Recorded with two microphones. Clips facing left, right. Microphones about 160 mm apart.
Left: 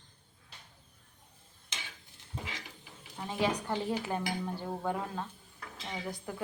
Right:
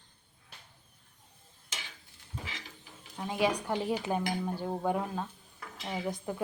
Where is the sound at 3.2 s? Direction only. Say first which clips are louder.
Right 2 dB; 15° right (ahead or behind).